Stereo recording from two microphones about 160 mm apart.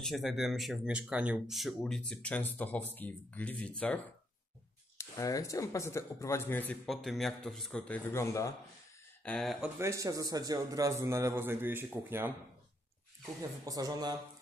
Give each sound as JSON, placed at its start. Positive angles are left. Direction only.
{"t": 0.0, "sound": "speech", "side_deg": 0}
{"t": 4.9, "sound": "speech", "side_deg": 20}
{"t": 9.2, "sound": "speech", "side_deg": 10}
{"t": 9.8, "sound": "a man's voice", "side_deg": -20}
{"t": 13.4, "sound": "speech", "side_deg": -20}